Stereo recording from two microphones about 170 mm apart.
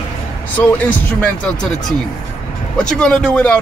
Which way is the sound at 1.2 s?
5° left (ahead or behind).